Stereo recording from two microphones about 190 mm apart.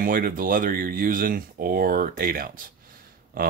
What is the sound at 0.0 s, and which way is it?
Speech, 45° right (ahead or behind).